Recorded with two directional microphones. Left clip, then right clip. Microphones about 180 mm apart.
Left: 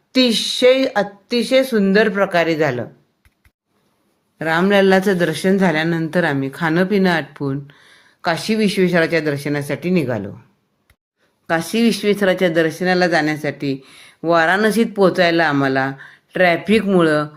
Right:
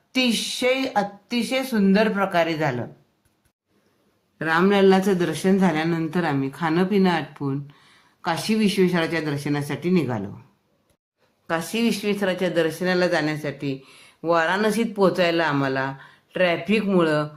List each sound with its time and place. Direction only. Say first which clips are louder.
0.1 s speech: left 7 dB; 25° left (ahead or behind)
4.4 s speech: left 4 dB; 25° left (ahead or behind)
11.4 s speech: left 6 dB; 25° left (ahead or behind)